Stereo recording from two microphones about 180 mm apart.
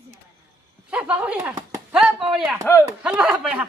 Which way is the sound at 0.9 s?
5° right (ahead or behind).